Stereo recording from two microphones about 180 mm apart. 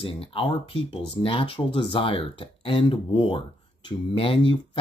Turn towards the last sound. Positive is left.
turn(degrees=30)  # may be behind; listen again after turning